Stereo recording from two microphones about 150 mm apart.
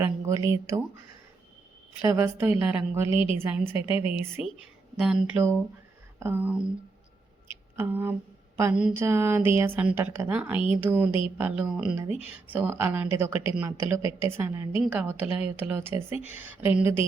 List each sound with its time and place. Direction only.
0.0 s speech: 20° right (ahead or behind)
2.0 s a woman's voice: 15° right (ahead or behind)
3.1 s a woman's voice: 35° left (ahead or behind)
3.3 s a woman's voice: 15° right (ahead or behind)
3.9 s a woman's voice: 35° left (ahead or behind)
4.4 s a woman's voice: 5° right (ahead or behind)
7.8 s a woman's voice: 15° right (ahead or behind)